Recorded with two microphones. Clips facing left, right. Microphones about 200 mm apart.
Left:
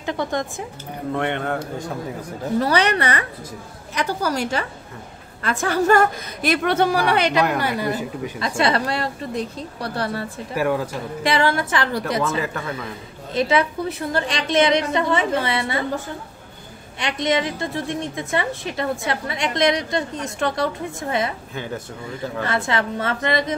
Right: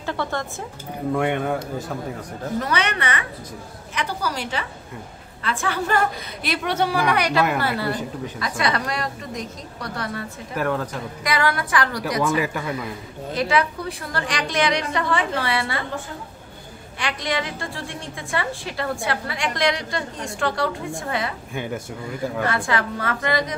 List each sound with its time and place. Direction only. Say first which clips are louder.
0.0 s speech: left 3 dB; 15° left (ahead or behind)
1.1 s a man's voice: right 1 dB; 10° right (ahead or behind)
2.6 s a woman's voice: left 6 dB; 35° left (ahead or behind); by 7.0 s 55° left (ahead or behind)
7.0 s a woman's voice: left 2 dB; 30° left (ahead or behind); by 8.1 s 10° left (ahead or behind)
8.4 s a woman's voice: left 4 dB; 30° left (ahead or behind)
10.5 s speech: left 2 dB; 10° left (ahead or behind)
11.2 s a woman's voice: left 3 dB; 25° left (ahead or behind)
12.4 s a man's voice: right 1 dB; 10° right (ahead or behind)
13.3 s a woman's voice: left 2 dB; 25° left (ahead or behind)
17.0 s a woman's voice: left 5 dB; 20° left (ahead or behind)
22.5 s a woman's voice: left 1 dB; 25° left (ahead or behind)